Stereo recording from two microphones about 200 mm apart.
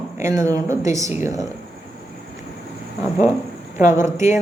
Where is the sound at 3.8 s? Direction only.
40° left (ahead or behind).